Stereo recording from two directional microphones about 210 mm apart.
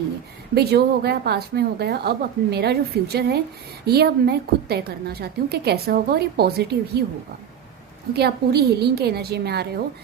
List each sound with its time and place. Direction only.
0.5 s a woman's voice: 50° right (ahead or behind)
8.1 s a woman's voice: 50° right (ahead or behind)